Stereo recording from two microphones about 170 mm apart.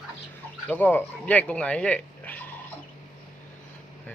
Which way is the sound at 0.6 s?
10° left (ahead or behind).